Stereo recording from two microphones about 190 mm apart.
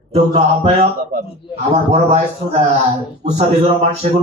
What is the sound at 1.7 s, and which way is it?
Speech, 35° right (ahead or behind).